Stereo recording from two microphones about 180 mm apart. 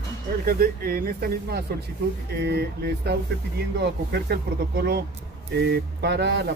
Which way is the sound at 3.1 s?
65° right (ahead or behind).